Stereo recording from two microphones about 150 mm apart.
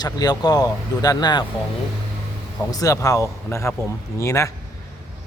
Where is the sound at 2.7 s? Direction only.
25° left (ahead or behind).